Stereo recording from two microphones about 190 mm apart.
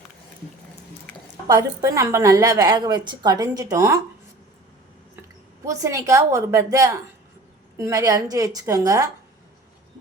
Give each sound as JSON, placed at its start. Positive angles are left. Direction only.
{"t": 1.5, "sound": "a woman's voice", "side_deg": -15}
{"t": 5.6, "sound": "a woman's voice", "side_deg": -15}